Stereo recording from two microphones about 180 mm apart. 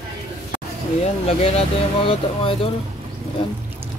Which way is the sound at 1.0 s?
35° left (ahead or behind).